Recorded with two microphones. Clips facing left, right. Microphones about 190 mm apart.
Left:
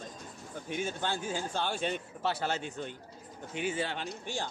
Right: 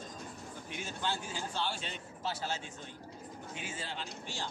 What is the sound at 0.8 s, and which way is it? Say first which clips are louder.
A man's voice: left 3 dB; 50° left (ahead or behind).